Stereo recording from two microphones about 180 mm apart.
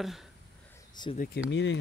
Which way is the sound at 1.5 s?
90° left.